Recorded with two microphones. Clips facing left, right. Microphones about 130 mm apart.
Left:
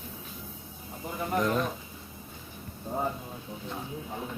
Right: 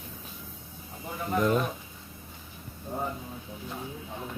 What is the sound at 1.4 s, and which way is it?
Speech, 5° right (ahead or behind).